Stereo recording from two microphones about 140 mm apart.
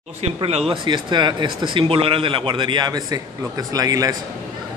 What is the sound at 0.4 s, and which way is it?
Speech, 45° right (ahead or behind).